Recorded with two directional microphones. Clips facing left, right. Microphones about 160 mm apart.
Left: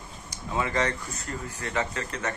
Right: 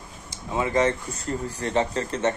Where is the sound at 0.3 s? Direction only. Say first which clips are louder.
Right 4 dB; 20° right (ahead or behind).